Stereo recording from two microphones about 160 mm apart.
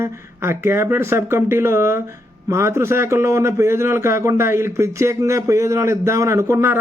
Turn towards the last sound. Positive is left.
turn(degrees=-15)  # may be behind; listen again after turning